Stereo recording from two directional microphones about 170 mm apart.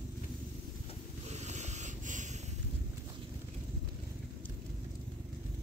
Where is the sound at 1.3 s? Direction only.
45° right (ahead or behind).